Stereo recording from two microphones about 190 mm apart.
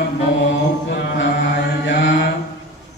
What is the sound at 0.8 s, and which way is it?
Mantra, 65° left (ahead or behind).